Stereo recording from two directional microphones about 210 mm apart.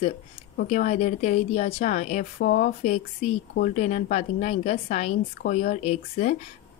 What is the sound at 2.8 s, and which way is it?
A woman's voice, 30° left (ahead or behind).